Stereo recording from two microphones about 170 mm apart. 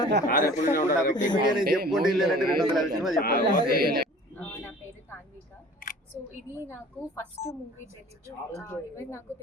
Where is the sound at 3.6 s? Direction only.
65° right (ahead or behind).